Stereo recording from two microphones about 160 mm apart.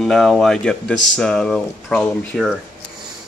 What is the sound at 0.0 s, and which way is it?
Speech, centre (ahead or behind).